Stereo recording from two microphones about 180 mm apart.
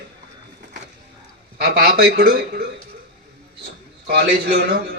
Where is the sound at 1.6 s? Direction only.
60° right (ahead or behind).